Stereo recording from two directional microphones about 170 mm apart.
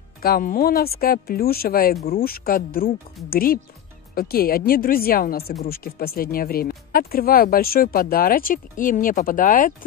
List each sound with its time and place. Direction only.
0.2 s speech: 60° left (ahead or behind)